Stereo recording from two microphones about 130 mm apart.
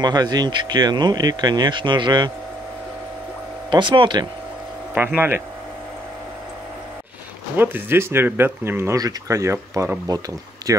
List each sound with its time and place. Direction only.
0.0 s speech: 30° right (ahead or behind)
3.7 s speech: 40° right (ahead or behind)
4.9 s speech: 15° right (ahead or behind)
7.5 s speech: 15° right (ahead or behind)